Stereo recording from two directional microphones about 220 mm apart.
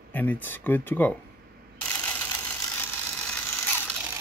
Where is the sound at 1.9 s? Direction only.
5° left (ahead or behind).